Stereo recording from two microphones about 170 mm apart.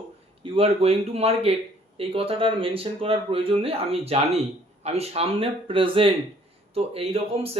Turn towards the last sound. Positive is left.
turn(degrees=-35)  # may be behind; listen again after turning